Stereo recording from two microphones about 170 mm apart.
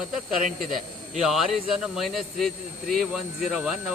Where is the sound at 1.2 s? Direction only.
Centre (ahead or behind).